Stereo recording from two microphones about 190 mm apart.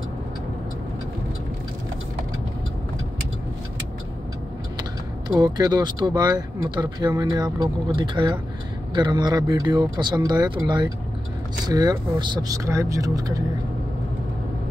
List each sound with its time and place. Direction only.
5.4 s speech: 20° right (ahead or behind)